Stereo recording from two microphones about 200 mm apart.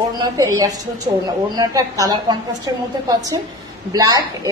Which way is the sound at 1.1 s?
25° right (ahead or behind).